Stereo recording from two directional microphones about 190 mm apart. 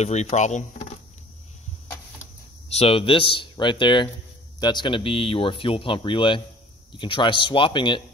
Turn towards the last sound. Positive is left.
turn(degrees=25)  # may be behind; listen again after turning